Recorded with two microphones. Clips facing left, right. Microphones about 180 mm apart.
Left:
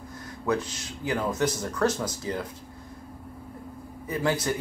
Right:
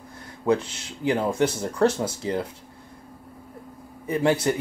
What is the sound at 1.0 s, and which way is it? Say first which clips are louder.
Speech: right 4 dB; 30° right (ahead or behind).